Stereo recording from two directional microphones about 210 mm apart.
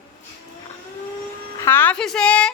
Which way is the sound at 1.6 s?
10° left (ahead or behind).